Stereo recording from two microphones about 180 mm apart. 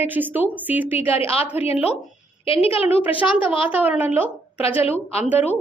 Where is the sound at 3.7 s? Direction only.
10° right (ahead or behind).